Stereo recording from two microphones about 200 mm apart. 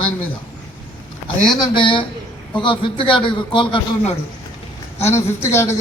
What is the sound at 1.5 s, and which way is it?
A man's voice, 25° left (ahead or behind).